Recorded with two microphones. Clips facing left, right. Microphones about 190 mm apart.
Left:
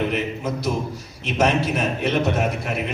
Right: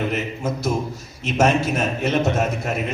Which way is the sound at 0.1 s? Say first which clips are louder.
Even; 45° right (ahead or behind).